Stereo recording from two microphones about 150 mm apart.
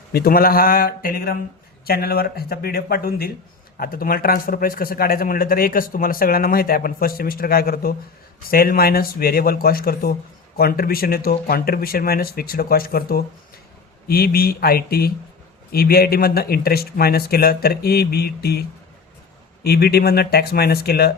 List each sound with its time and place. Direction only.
0.1 s speech: 90° left
1.8 s speech: 90° left
3.8 s a man's voice: 75° left (ahead or behind); by 18.6 s 90° left
19.6 s speech: 90° left